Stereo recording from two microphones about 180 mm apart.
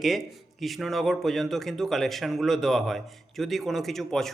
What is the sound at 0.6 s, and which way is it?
A man's voice, centre (ahead or behind).